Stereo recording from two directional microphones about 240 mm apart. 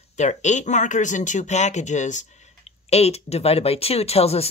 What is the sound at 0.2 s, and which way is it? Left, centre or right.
Speech, left.